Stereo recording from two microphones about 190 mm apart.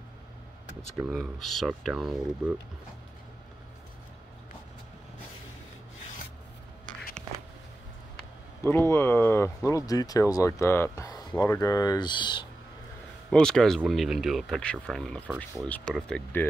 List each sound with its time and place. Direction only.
1.0 s speech: centre (ahead or behind)
8.6 s speech: 10° left (ahead or behind)
13.3 s speech: 5° left (ahead or behind)